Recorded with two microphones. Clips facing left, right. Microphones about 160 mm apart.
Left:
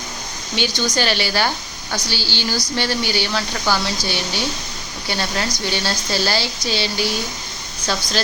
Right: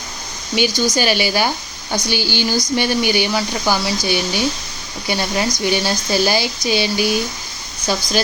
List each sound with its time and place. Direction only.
0.5 s speech: 10° right (ahead or behind)